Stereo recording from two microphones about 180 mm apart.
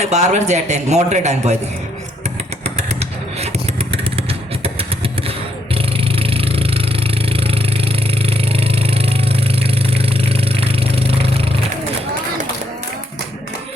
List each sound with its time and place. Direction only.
0.0 s a man's voice: 40° right (ahead or behind)
2.2 s vehicle: 35° right (ahead or behind)